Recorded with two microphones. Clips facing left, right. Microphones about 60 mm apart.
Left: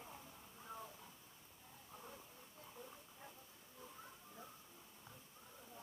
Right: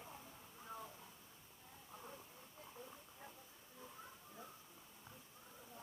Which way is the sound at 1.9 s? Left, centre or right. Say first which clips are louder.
Right 1 dB; centre.